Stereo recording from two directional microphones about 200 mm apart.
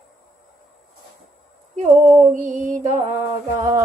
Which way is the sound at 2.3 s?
40° right (ahead or behind).